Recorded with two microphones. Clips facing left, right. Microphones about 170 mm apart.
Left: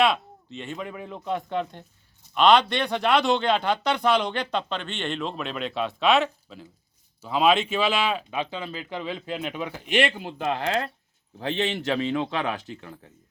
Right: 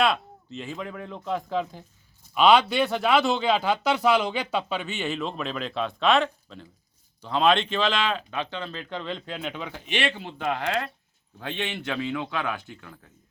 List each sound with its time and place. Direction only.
0.0 s speech: centre (ahead or behind)
10.4 s speech: 25° left (ahead or behind)